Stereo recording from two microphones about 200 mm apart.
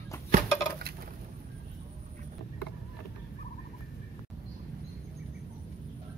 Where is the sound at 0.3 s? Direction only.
50° right (ahead or behind).